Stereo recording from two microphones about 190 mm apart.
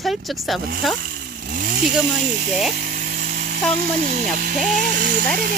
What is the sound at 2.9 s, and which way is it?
Electric toothbrush, 45° right (ahead or behind).